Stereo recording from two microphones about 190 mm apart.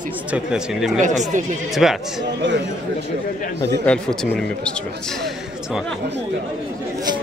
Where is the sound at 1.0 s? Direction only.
40° right (ahead or behind).